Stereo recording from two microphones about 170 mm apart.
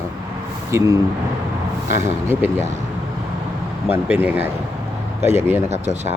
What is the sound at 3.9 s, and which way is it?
Speech, 10° right (ahead or behind).